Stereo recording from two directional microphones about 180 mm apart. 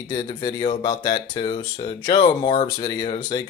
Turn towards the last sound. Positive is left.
turn(degrees=25)  # may be behind; listen again after turning